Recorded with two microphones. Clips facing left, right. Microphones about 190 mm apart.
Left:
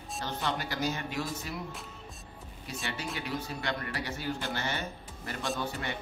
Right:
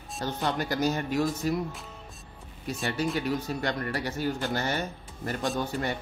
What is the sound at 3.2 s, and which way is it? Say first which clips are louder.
A man's voice: right 6 dB; 45° right (ahead or behind).